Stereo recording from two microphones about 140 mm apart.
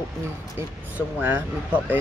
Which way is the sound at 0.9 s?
10° right (ahead or behind).